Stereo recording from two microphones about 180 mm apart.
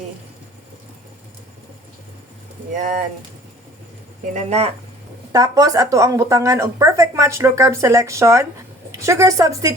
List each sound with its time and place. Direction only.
2.7 s speech: 45° right (ahead or behind)
4.4 s speech: 35° right (ahead or behind)
5.3 s a woman's voice: 20° right (ahead or behind)